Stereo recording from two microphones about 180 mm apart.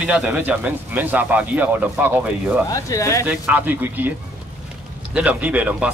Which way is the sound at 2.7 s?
20° left (ahead or behind).